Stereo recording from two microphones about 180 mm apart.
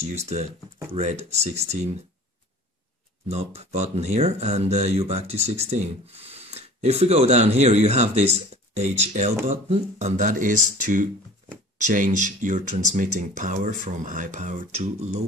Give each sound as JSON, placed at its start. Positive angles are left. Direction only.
{"t": 0.0, "sound": "speech", "side_deg": -35}
{"t": 3.3, "sound": "speech", "side_deg": -35}